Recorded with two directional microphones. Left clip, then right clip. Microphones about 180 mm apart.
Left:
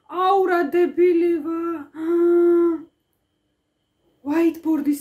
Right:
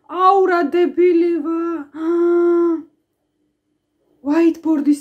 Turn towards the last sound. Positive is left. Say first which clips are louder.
# right 5 dB
turn(degrees=15)  # may be behind; listen again after turning